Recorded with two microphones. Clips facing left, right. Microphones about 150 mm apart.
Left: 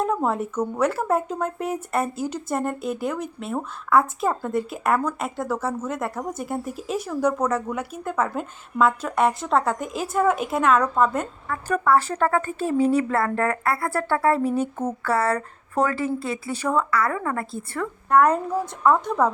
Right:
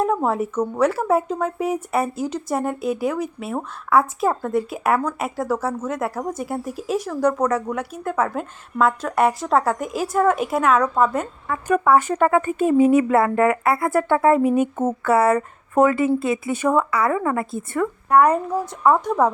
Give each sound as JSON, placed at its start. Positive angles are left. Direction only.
{"t": 0.0, "sound": "speech", "side_deg": 0}
{"t": 11.4, "sound": "a woman's voice", "side_deg": -10}